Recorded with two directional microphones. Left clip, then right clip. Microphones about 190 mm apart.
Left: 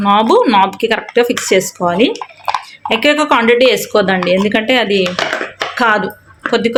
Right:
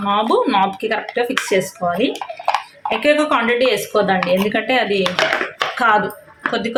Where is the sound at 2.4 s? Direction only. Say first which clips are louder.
Left 3 dB; 5° right (ahead or behind).